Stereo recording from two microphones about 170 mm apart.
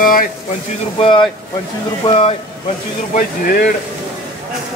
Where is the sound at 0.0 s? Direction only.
55° left (ahead or behind).